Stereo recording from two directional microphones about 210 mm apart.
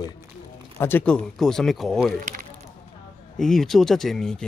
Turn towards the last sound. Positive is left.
turn(degrees=0)  # may be behind; listen again after turning